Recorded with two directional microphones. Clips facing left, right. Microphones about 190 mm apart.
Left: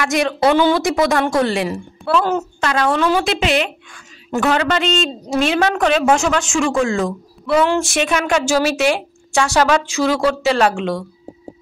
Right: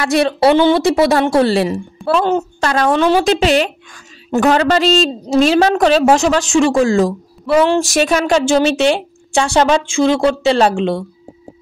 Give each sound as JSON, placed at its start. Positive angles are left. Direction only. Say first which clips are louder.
{"t": 0.0, "sound": "a woman's voice", "louder": "right 4 dB", "side_deg": -30}
{"t": 2.6, "sound": "a woman's voice", "louder": "right 3 dB", "side_deg": -40}